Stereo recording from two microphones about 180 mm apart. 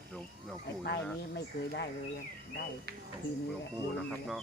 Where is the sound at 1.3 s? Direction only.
65° left (ahead or behind).